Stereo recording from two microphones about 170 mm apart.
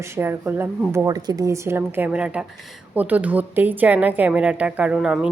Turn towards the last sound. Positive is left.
turn(degrees=-5)  # may be behind; listen again after turning